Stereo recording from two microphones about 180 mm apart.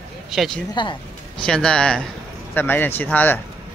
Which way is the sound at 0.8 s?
25° left (ahead or behind).